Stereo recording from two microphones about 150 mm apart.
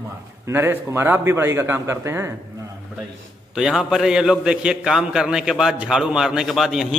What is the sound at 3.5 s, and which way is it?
A man's voice, centre (ahead or behind).